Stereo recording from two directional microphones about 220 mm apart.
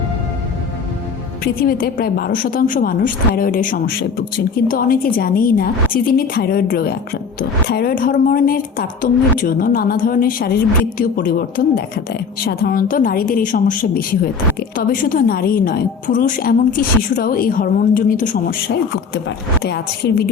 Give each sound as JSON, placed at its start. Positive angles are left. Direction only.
{"t": 1.6, "sound": "a woman's voice", "side_deg": 40}